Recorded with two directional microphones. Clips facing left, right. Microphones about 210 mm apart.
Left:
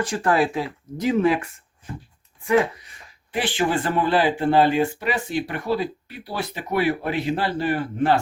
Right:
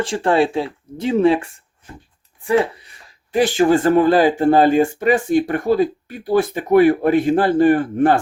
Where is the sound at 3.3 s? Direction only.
45° right (ahead or behind).